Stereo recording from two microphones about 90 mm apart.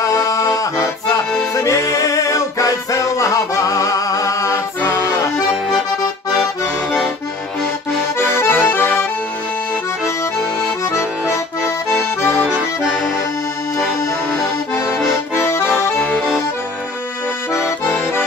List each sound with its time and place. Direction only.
0.0 s music: 40° left (ahead or behind)
8.2 s accordion: 25° left (ahead or behind)
11.6 s accordion: 25° left (ahead or behind)
14.9 s accordion: 30° left (ahead or behind)
17.6 s accordion: 25° left (ahead or behind)